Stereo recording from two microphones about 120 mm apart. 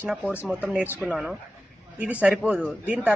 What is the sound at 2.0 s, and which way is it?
A man's voice, 10° right (ahead or behind).